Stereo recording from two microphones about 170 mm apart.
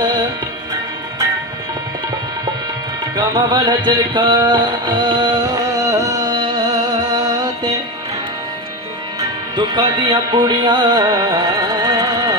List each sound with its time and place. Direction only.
3.2 s music: 25° right (ahead or behind)
9.2 s music: 25° right (ahead or behind)